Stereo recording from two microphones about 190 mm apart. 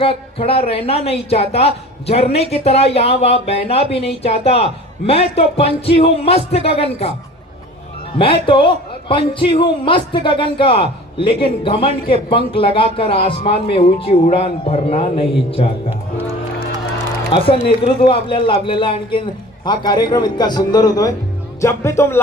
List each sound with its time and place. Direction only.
0.0 s speech: 30° left (ahead or behind)
8.1 s a man's voice: 30° left (ahead or behind)
17.6 s a man's voice: 30° left (ahead or behind)
21.6 s music: 15° left (ahead or behind)